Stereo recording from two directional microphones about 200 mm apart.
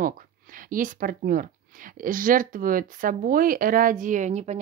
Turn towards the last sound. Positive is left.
turn(degrees=-35)  # may be behind; listen again after turning